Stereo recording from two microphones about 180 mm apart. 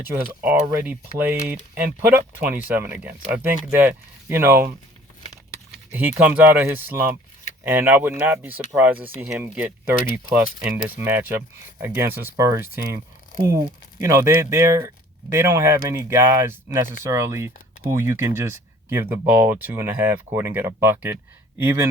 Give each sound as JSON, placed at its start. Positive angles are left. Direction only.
{"t": 0.1, "sound": "speech", "side_deg": -10}
{"t": 5.9, "sound": "speech", "side_deg": -10}
{"t": 14.0, "sound": "speech", "side_deg": -20}